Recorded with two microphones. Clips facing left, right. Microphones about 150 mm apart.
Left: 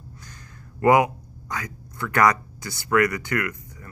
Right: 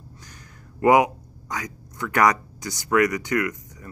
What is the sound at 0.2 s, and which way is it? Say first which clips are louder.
Speech: left 1 dB; 15° right (ahead or behind).